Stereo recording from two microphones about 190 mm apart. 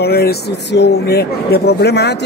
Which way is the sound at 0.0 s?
55° left (ahead or behind).